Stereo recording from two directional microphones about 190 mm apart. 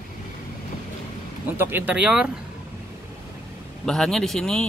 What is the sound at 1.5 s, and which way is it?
Speech, 10° right (ahead or behind).